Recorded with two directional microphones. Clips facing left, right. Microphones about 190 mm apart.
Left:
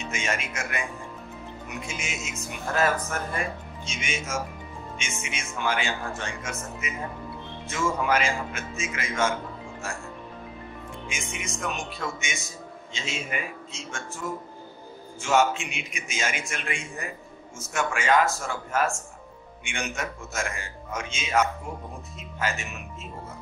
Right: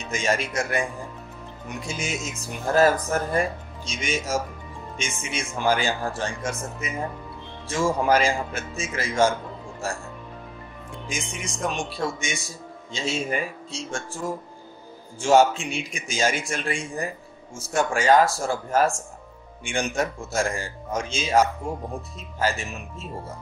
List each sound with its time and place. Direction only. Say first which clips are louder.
0.1 s speech: right 8 dB; 35° right (ahead or behind)
1.9 s speech: right 9 dB; 35° right (ahead or behind)
11.1 s speech: right 4 dB; 35° right (ahead or behind)